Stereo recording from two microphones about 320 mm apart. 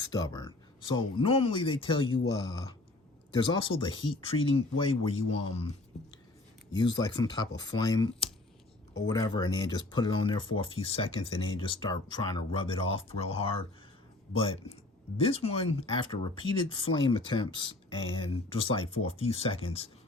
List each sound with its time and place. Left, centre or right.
0.0 s speech: centre
3.3 s speech: centre
15.2 s speech: centre